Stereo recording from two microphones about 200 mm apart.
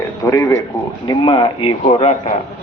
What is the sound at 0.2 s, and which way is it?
A man's voice, 15° left (ahead or behind).